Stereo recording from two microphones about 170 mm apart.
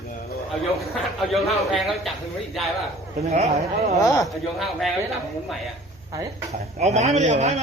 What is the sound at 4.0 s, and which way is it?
Speech, 20° left (ahead or behind).